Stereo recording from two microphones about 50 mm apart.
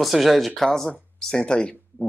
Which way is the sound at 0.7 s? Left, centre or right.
Centre.